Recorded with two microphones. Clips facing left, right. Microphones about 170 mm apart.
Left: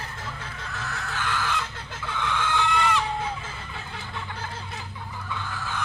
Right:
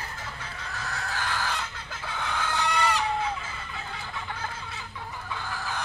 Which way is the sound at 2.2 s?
40° right (ahead or behind).